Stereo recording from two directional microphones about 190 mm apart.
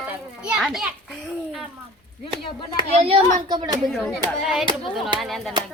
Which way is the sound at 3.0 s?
25° right (ahead or behind).